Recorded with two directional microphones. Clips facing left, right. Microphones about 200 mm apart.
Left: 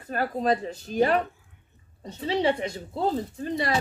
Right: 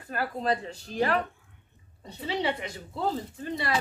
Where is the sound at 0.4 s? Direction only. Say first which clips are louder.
Left 4 dB; 20° left (ahead or behind).